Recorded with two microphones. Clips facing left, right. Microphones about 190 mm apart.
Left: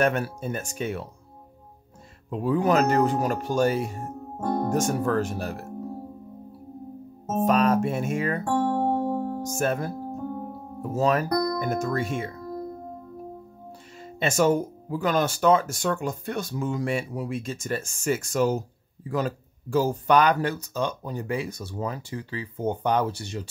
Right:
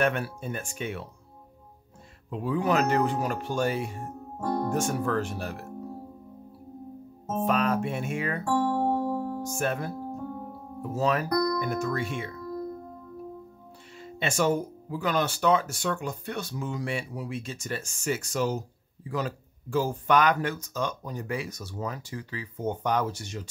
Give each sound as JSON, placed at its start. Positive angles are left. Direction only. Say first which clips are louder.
{"t": 0.0, "sound": "speech", "louder": "left 3 dB", "side_deg": 40}
{"t": 2.3, "sound": "speech", "louder": "left 4 dB", "side_deg": 45}
{"t": 7.2, "sound": "speech", "louder": "left 4 dB", "side_deg": 45}
{"t": 9.1, "sound": "music", "louder": "left 2 dB", "side_deg": 45}
{"t": 10.8, "sound": "speech", "louder": "left 3 dB", "side_deg": 40}
{"t": 13.9, "sound": "speech", "louder": "left 4 dB", "side_deg": 45}